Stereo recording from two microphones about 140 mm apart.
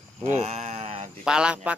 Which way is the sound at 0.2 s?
50° right (ahead or behind).